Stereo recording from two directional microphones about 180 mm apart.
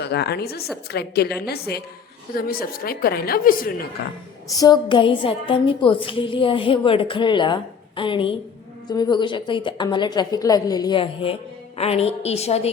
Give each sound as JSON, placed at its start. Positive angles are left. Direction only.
{"t": 0.0, "sound": "a woman's voice", "side_deg": 65}
{"t": 4.5, "sound": "a woman's voice", "side_deg": 20}